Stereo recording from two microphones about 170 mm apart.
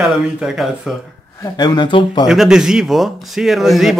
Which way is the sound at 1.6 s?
25° left (ahead or behind).